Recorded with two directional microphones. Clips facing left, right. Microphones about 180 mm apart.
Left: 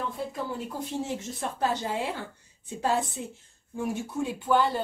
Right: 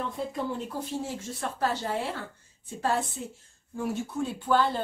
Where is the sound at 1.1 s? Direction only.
15° left (ahead or behind).